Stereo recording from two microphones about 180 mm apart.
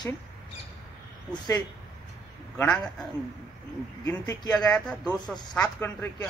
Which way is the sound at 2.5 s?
10° left (ahead or behind).